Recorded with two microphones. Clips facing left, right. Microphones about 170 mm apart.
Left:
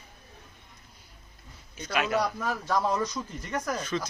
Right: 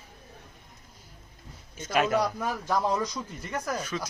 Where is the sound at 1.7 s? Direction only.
45° right (ahead or behind).